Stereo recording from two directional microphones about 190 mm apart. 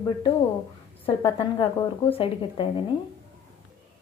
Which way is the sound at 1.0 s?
30° left (ahead or behind).